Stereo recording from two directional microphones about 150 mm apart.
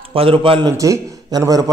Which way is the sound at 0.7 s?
20° right (ahead or behind).